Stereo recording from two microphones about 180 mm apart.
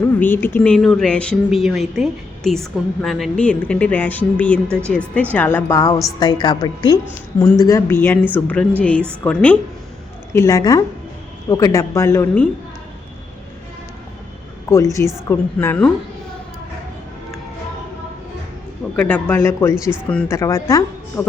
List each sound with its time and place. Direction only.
0.0 s a woman's voice: 10° left (ahead or behind)
10.3 s a woman's voice: 20° left (ahead or behind)
14.7 s a woman's voice: 15° left (ahead or behind)
18.9 s a woman's voice: 10° left (ahead or behind)
19.7 s a woman's voice: 5° right (ahead or behind)
20.1 s a woman's voice: 5° left (ahead or behind)
20.3 s a woman's voice: 15° left (ahead or behind)